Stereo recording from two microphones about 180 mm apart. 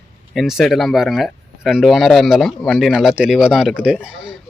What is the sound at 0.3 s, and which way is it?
Speech, centre (ahead or behind).